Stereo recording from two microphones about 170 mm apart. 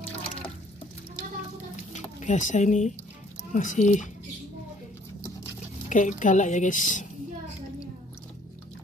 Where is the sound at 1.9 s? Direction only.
45° left (ahead or behind).